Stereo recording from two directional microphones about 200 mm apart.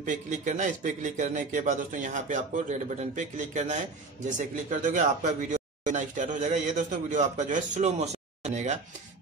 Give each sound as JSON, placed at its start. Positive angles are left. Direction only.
{"t": 0.0, "sound": "speech", "side_deg": -40}